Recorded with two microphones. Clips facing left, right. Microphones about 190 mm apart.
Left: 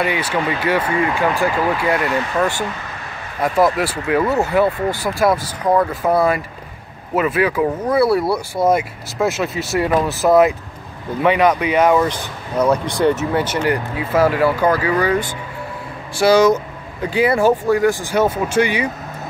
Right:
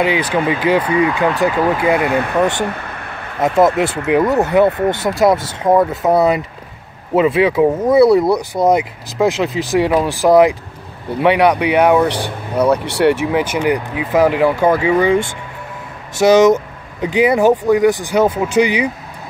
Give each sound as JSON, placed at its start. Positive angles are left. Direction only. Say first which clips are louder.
{"t": 0.0, "sound": "speech", "louder": "right 4 dB", "side_deg": -15}
{"t": 2.0, "sound": "speech", "louder": "right 4 dB", "side_deg": -60}
{"t": 2.6, "sound": "a sound", "louder": "right 4 dB", "side_deg": -60}
{"t": 3.3, "sound": "speech", "louder": "right 3 dB", "side_deg": -25}
{"t": 4.6, "sound": "speech", "louder": "right 4 dB", "side_deg": -60}
{"t": 4.9, "sound": "speech", "louder": "right 3 dB", "side_deg": -25}
{"t": 12.8, "sound": "speech", "louder": "right 3 dB", "side_deg": -70}
{"t": 13.1, "sound": "speech", "louder": "right 3 dB", "side_deg": -10}